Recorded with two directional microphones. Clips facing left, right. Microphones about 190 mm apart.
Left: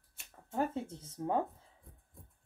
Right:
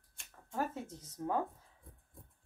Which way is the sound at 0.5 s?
25° left (ahead or behind).